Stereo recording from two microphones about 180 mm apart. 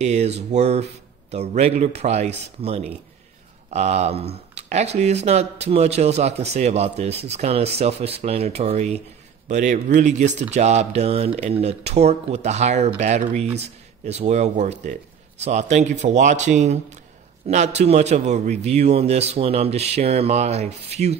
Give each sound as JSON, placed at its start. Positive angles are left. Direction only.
{"t": 0.0, "sound": "speech", "side_deg": -35}